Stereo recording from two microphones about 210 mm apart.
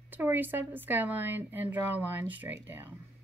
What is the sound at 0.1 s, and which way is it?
A woman's voice, 10° right (ahead or behind).